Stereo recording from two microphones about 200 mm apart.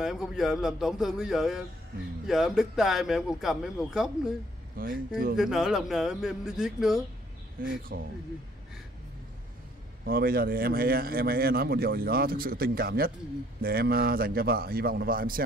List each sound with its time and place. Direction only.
0.0 s speech: centre (ahead or behind)
4.8 s speech: 45° right (ahead or behind)
5.4 s speech: centre (ahead or behind)
7.6 s speech: 45° right (ahead or behind)
10.0 s speech: 45° right (ahead or behind)